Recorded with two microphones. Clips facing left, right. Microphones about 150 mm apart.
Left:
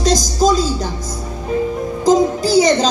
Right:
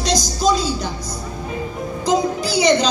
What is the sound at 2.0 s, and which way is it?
Music, 45° left (ahead or behind).